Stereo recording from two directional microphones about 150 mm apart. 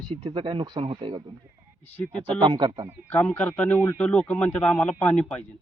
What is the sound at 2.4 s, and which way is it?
Speech, 30° right (ahead or behind).